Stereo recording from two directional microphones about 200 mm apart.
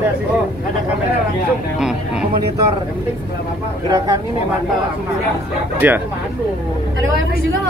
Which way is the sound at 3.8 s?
15° right (ahead or behind).